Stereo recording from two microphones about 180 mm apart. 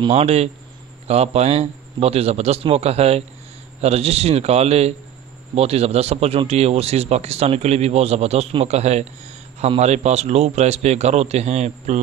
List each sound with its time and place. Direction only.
0.0 s speech: 35° right (ahead or behind)